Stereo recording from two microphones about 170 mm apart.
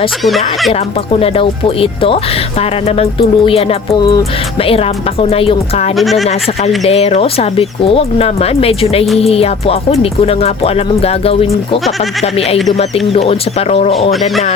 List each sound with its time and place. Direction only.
0.3 s speech: centre (ahead or behind)
1.2 s music: 35° left (ahead or behind)
6.0 s speech: centre (ahead or behind)
6.8 s music: 35° left (ahead or behind)